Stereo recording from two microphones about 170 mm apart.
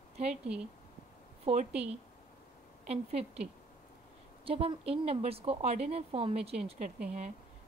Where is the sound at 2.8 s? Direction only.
35° right (ahead or behind).